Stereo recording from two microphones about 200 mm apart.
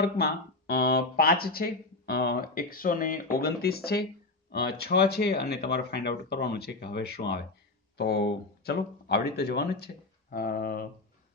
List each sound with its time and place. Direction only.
0.2 s speech: 50° left (ahead or behind)